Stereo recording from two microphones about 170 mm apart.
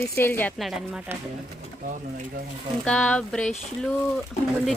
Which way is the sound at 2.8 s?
5° left (ahead or behind).